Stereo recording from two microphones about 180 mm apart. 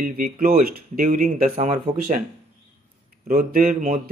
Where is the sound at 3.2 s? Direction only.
55° right (ahead or behind).